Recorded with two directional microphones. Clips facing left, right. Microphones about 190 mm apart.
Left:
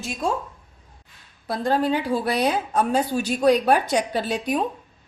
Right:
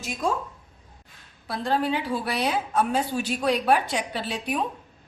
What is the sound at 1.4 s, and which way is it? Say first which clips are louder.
A woman's voice: left 4 dB; 45° left (ahead or behind).